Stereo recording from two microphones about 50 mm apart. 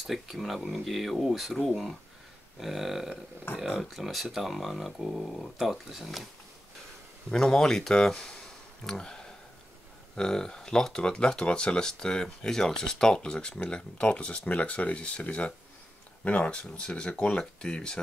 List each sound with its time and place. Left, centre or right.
0.0 s speech: centre
2.6 s speech: centre
7.2 s speech: centre